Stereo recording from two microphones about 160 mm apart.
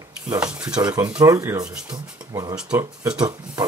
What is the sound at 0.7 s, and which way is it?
Speech, 25° right (ahead or behind).